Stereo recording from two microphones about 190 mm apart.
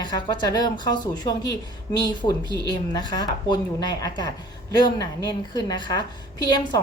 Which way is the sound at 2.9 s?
20° left (ahead or behind).